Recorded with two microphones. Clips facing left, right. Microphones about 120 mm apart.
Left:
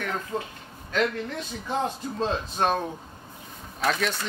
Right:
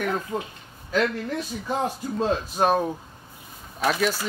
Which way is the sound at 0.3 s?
10° right (ahead or behind).